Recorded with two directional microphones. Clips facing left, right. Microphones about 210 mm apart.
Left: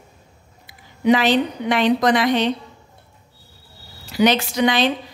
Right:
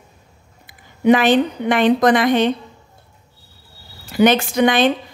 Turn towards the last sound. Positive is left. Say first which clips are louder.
# right 3 dB
turn(degrees=-50)  # may be behind; listen again after turning